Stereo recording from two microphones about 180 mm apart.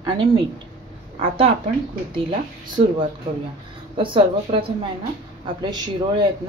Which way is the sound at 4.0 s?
30° right (ahead or behind).